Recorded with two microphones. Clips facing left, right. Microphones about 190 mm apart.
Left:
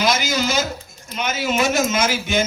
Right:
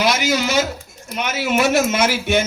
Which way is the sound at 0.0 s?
65° right (ahead or behind).